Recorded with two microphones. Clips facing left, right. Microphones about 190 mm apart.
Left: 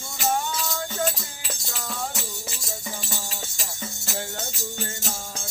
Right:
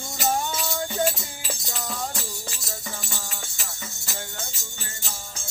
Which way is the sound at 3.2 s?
30° left (ahead or behind).